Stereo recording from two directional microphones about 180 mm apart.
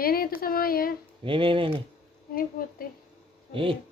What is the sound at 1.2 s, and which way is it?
Speech, 30° right (ahead or behind).